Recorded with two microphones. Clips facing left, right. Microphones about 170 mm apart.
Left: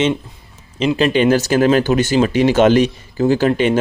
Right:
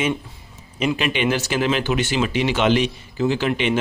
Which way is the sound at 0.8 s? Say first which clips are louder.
Left 7 dB; 40° left (ahead or behind).